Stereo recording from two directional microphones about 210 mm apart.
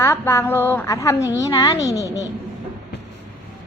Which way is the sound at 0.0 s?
15° left (ahead or behind).